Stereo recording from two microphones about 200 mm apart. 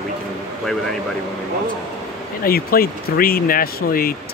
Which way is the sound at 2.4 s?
50° left (ahead or behind).